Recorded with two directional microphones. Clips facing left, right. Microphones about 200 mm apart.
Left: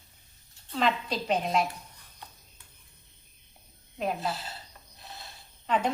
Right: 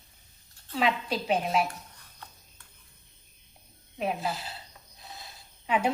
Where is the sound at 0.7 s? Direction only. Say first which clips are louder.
Even; 5° right (ahead or behind).